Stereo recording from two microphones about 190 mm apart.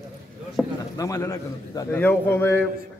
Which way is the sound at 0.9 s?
20° left (ahead or behind).